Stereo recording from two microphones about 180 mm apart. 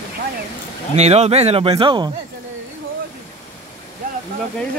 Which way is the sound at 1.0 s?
35° right (ahead or behind).